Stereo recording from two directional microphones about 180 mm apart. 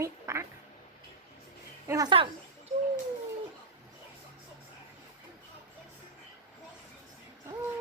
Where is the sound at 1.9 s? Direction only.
20° right (ahead or behind).